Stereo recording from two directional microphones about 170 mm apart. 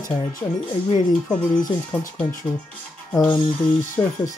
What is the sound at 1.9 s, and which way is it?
Speech, 10° left (ahead or behind).